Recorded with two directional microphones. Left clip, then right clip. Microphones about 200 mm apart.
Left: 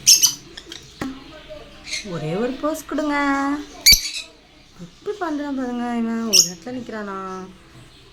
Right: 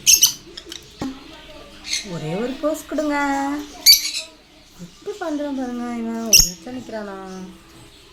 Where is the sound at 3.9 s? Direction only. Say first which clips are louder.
Right 1 dB; 50° left (ahead or behind).